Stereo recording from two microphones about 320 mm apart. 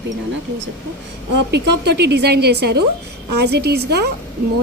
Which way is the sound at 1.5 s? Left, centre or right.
Right.